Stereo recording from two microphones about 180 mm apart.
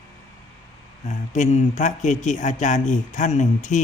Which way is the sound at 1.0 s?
40° left (ahead or behind).